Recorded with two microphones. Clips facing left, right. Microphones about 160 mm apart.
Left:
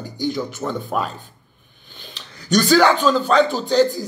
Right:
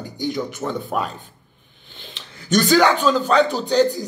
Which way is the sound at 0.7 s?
Centre (ahead or behind).